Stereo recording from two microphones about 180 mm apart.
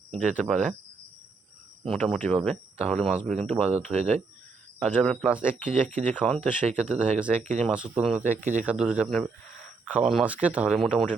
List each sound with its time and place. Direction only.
0.2 s speech: 5° left (ahead or behind)
1.8 s speech: centre (ahead or behind)
3.8 s speech: 40° right (ahead or behind)
4.8 s speech: 5° left (ahead or behind)
5.2 s speech: 5° right (ahead or behind)
5.6 s speech: 45° right (ahead or behind)
6.2 s speech: 5° left (ahead or behind)
6.8 s speech: 5° right (ahead or behind)
8.2 s speech: 45° right (ahead or behind)
8.6 s speech: 5° right (ahead or behind)